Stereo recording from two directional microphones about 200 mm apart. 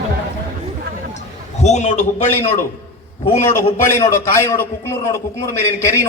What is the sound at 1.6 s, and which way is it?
Speech, 35° left (ahead or behind).